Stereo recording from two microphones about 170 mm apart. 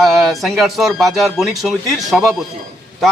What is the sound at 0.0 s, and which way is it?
A man's voice, centre (ahead or behind).